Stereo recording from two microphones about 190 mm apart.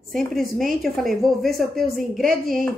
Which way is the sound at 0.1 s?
Centre (ahead or behind).